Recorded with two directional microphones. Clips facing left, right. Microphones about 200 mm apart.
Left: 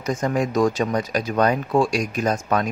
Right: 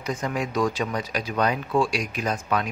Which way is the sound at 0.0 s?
45° left (ahead or behind).